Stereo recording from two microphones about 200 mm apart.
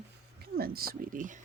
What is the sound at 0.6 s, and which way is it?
Speech, 50° right (ahead or behind).